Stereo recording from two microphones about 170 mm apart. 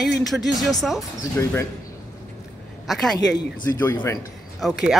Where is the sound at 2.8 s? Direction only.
Centre (ahead or behind).